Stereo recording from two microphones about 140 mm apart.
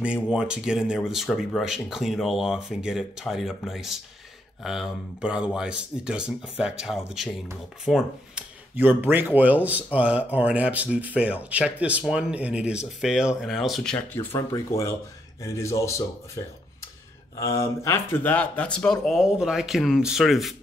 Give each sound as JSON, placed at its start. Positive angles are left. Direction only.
{"t": 0.0, "sound": "speech", "side_deg": -5}
{"t": 8.7, "sound": "speech", "side_deg": -15}
{"t": 14.5, "sound": "speech", "side_deg": 20}